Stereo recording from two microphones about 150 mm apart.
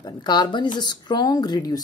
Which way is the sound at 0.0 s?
30° left (ahead or behind).